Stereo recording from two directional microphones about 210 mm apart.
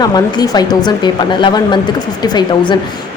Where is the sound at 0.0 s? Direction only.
20° left (ahead or behind).